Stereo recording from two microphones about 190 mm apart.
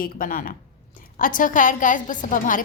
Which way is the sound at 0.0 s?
45° left (ahead or behind).